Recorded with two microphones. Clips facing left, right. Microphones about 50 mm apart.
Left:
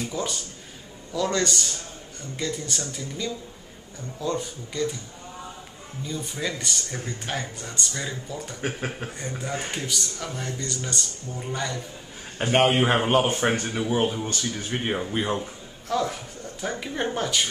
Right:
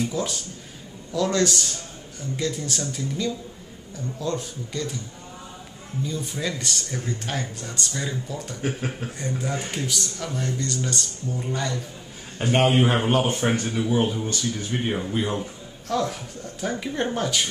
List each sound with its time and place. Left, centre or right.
0.0 s a man's voice: centre
6.0 s speech: centre
8.5 s speech: centre
12.4 s speech: centre
15.0 s a man's voice: centre